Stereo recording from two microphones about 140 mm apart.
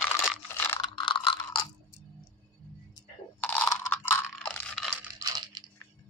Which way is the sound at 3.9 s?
15° left (ahead or behind).